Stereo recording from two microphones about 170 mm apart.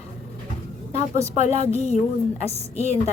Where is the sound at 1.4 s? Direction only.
40° left (ahead or behind).